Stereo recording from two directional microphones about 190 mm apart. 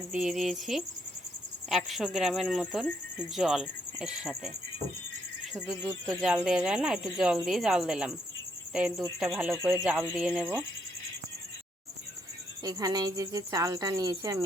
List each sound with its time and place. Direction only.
0.1 s speech: 5° right (ahead or behind)
5.5 s speech: centre (ahead or behind)
9.6 s speech: 15° right (ahead or behind)
12.6 s speech: 20° right (ahead or behind)